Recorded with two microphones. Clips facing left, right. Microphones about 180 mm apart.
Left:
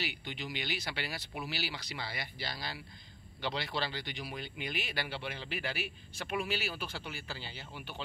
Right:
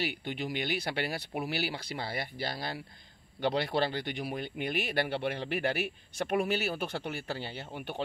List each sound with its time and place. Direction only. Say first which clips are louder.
0.0 s speech: right 6 dB; 50° right (ahead or behind)